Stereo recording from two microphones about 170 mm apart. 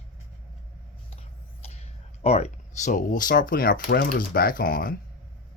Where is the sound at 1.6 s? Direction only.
40° left (ahead or behind).